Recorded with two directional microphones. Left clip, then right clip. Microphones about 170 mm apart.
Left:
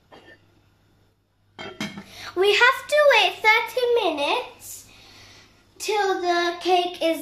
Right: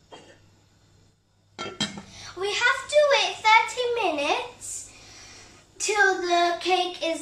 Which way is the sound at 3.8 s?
40° left (ahead or behind).